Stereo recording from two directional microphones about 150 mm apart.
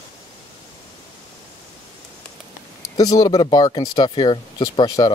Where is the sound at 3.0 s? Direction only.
25° left (ahead or behind).